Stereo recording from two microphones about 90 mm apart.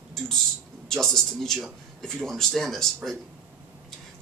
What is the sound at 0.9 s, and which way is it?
A man's voice, 5° left (ahead or behind).